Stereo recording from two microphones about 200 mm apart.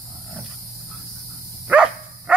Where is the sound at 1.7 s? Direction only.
5° right (ahead or behind).